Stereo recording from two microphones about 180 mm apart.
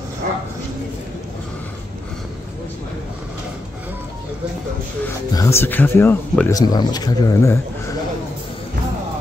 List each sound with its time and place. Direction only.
5.0 s speech: 15° left (ahead or behind)